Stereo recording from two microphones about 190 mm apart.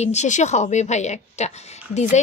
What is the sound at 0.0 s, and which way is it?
A woman's voice, 35° left (ahead or behind).